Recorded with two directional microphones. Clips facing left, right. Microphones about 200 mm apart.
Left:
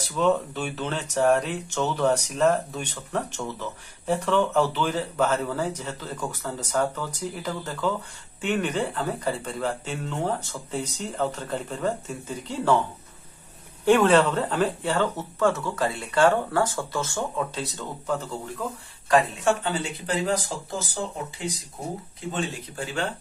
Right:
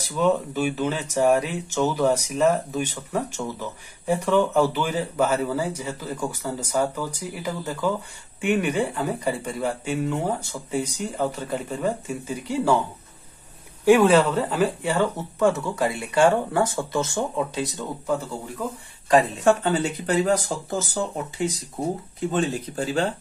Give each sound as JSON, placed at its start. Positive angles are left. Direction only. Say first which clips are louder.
{"t": 0.0, "sound": "speech", "louder": "right 1 dB", "side_deg": -10}
{"t": 13.8, "sound": "speech", "louder": "right 2 dB", "side_deg": -10}
{"t": 19.4, "sound": "speech", "louder": "right 5 dB", "side_deg": -45}
{"t": 22.3, "sound": "speech", "louder": "right 5 dB", "side_deg": -35}